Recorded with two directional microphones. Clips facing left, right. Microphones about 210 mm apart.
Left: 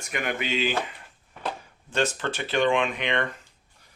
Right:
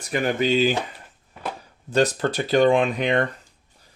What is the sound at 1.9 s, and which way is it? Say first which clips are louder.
Speech: right 6 dB; 35° right (ahead or behind).